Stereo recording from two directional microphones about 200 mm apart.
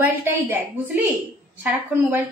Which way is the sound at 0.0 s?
10° right (ahead or behind).